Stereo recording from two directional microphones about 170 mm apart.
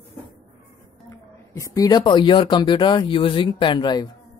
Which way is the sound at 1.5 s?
20° left (ahead or behind).